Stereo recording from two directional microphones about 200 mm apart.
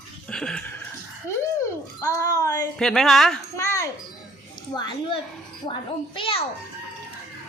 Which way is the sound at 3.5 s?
15° left (ahead or behind).